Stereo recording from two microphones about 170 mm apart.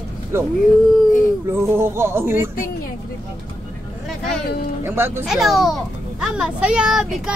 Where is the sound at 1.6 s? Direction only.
15° right (ahead or behind).